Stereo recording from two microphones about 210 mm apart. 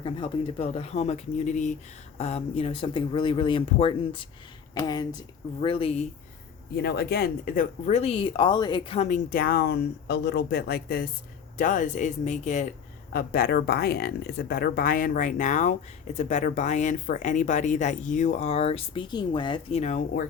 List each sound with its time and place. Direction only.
0.0 s speech: 20° left (ahead or behind)
6.7 s speech: 55° left (ahead or behind); by 12.6 s 35° left (ahead or behind)
13.1 s speech: 45° left (ahead or behind)